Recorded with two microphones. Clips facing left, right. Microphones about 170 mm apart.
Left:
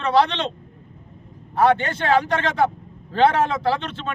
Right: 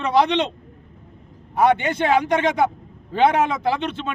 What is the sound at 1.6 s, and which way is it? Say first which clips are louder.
A man's voice: right 1 dB; 15° right (ahead or behind).